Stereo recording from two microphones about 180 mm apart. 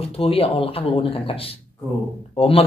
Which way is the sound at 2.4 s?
35° left (ahead or behind).